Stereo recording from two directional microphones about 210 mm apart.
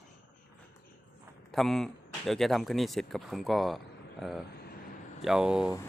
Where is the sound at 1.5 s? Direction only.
Centre (ahead or behind).